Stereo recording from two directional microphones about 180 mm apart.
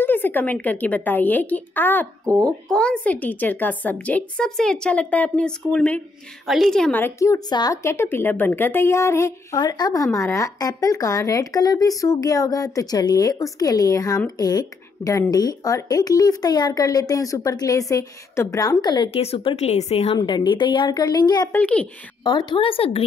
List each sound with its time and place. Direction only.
0.0 s a woman's voice: 10° left (ahead or behind)
19.0 s speech: 35° left (ahead or behind)
20.2 s a woman's voice: 25° left (ahead or behind)
21.5 s speech: 5° left (ahead or behind)
22.2 s a woman's voice: 25° left (ahead or behind)